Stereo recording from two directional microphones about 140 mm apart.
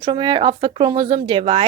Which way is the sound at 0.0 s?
35° right (ahead or behind).